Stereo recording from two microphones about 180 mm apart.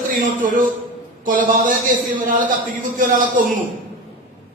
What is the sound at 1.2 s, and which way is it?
Speech, 50° right (ahead or behind).